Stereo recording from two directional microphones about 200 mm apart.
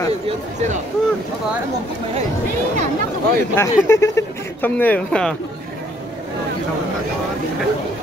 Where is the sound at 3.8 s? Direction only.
15° left (ahead or behind).